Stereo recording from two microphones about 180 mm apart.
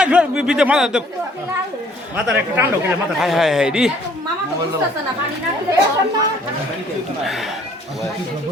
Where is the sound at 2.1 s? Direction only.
5° right (ahead or behind).